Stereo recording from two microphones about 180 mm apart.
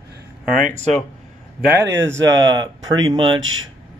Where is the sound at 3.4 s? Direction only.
90° right.